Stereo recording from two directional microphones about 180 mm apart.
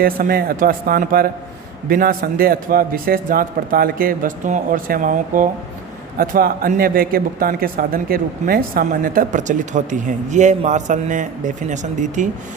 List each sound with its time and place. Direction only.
0.0 s speech: 55° right (ahead or behind)